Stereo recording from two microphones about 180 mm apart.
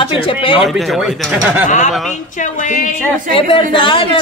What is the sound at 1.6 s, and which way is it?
A man's voice, 40° left (ahead or behind).